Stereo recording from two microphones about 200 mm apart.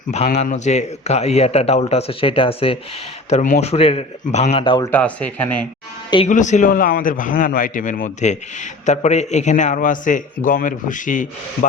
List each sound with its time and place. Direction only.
0.1 s a man's voice: 35° left (ahead or behind)
4.9 s speech: 5° left (ahead or behind)
6.2 s a man's voice: 35° left (ahead or behind)